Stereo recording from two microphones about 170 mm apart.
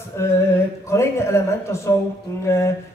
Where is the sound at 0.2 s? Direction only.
15° left (ahead or behind).